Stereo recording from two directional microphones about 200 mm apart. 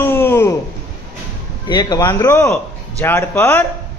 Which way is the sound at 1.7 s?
20° left (ahead or behind).